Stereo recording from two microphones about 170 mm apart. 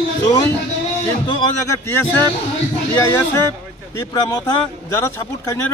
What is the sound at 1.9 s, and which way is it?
Speech, 15° left (ahead or behind).